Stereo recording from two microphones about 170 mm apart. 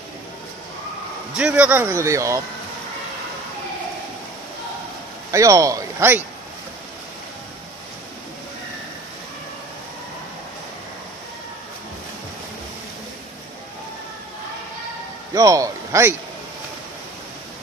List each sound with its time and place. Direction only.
1.3 s speech: 5° right (ahead or behind)
5.3 s speech: 20° right (ahead or behind)
15.3 s a man's voice: 20° right (ahead or behind)